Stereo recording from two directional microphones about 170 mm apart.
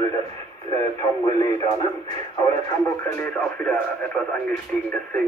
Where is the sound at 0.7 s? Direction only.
25° left (ahead or behind).